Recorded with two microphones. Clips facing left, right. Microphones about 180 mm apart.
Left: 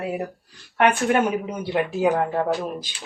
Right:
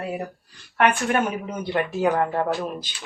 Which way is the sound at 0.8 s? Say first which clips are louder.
Left 2 dB; 15° left (ahead or behind).